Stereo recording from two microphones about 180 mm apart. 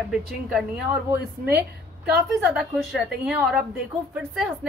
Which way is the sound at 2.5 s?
Centre (ahead or behind).